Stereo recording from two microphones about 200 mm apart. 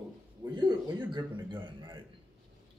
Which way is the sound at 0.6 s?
20° right (ahead or behind).